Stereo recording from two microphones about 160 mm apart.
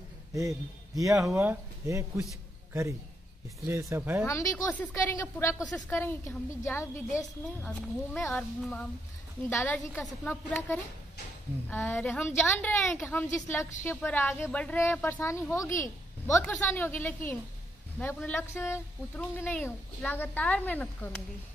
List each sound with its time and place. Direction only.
0.3 s speech: 20° right (ahead or behind)
3.6 s speech: 15° right (ahead or behind)
4.3 s speech: 20° left (ahead or behind)
7.6 s speech: 5° left (ahead or behind)